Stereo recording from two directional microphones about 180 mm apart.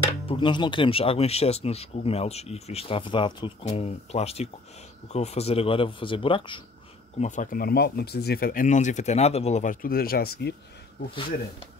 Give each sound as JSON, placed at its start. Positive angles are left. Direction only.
{"t": 0.3, "sound": "speech", "side_deg": 25}
{"t": 7.2, "sound": "speech", "side_deg": 45}